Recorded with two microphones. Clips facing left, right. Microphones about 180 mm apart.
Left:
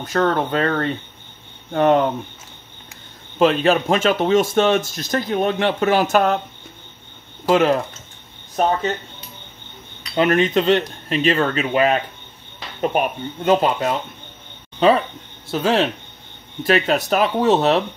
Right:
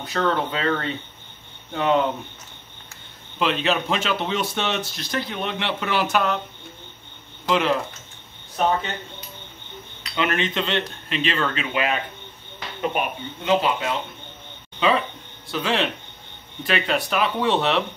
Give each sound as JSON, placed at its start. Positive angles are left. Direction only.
{"t": 0.0, "sound": "speech", "side_deg": 45}
{"t": 3.3, "sound": "speech", "side_deg": 45}
{"t": 7.4, "sound": "speech", "side_deg": 45}
{"t": 10.1, "sound": "speech", "side_deg": 40}
{"t": 15.5, "sound": "speech", "side_deg": 40}